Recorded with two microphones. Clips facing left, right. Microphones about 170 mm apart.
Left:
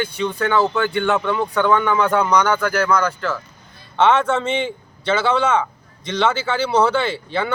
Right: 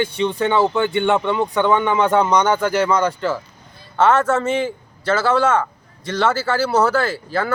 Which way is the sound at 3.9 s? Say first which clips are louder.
Right 1 dB; 5° right (ahead or behind).